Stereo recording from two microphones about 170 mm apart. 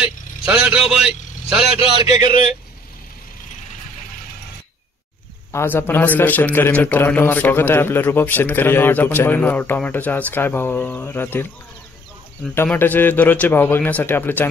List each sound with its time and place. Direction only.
0.5 s a man's voice: 5° right (ahead or behind)
1.8 s a man's voice: 35° left (ahead or behind)
5.5 s a man's voice: 15° left (ahead or behind)
12.4 s a man's voice: 10° left (ahead or behind)